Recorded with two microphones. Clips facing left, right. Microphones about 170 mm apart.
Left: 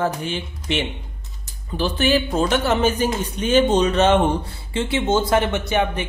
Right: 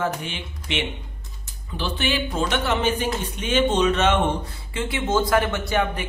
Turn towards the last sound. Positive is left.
turn(degrees=20)  # may be behind; listen again after turning